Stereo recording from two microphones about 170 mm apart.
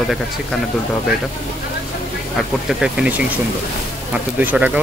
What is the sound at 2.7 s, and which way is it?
Speech, 5° right (ahead or behind).